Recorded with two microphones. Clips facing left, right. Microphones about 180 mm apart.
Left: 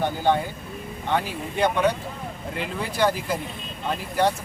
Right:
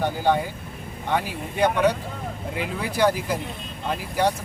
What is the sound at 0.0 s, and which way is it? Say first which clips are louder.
Speech: even; 10° right (ahead or behind).